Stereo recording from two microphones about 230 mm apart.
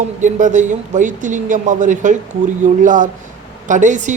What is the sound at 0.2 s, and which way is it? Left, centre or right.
Speech, right.